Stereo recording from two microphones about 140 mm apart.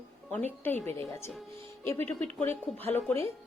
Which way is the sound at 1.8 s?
15° left (ahead or behind).